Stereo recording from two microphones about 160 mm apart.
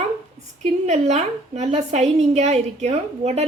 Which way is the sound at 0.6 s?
45° right (ahead or behind).